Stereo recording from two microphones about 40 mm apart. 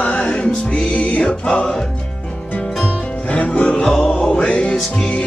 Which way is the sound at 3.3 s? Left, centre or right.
Left.